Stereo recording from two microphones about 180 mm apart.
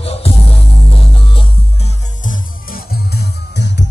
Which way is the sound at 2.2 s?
55° left (ahead or behind).